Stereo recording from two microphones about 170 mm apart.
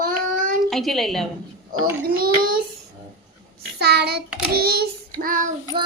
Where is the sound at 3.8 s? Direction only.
70° right (ahead or behind).